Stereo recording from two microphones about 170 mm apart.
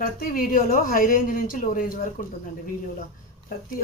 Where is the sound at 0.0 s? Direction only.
55° left (ahead or behind).